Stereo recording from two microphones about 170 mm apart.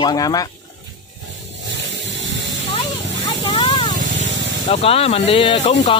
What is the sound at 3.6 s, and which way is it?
Vehicle, 30° left (ahead or behind).